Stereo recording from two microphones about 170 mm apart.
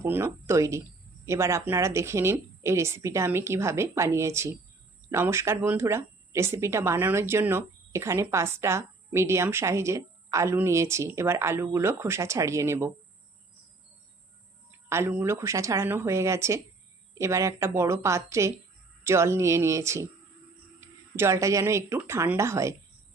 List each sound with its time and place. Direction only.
0.0 s speech: 15° right (ahead or behind)
14.8 s speech: 15° right (ahead or behind)